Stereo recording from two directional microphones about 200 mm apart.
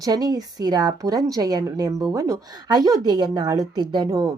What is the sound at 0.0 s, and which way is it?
A woman's voice, 20° right (ahead or behind).